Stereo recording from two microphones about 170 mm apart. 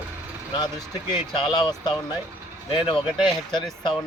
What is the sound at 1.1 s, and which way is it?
Speech, 25° left (ahead or behind).